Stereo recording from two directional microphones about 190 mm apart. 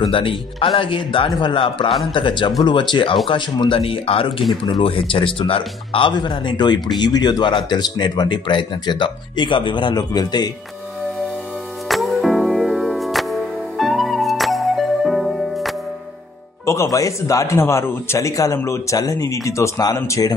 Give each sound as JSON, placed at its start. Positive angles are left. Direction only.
{"t": 0.0, "sound": "speech", "side_deg": 25}
{"t": 11.9, "sound": "music", "side_deg": 0}
{"t": 16.6, "sound": "a man's voice", "side_deg": 15}